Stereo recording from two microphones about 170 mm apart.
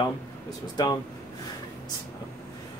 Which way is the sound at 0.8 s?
25° left (ahead or behind).